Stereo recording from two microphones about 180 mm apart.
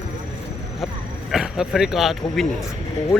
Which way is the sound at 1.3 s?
5° right (ahead or behind).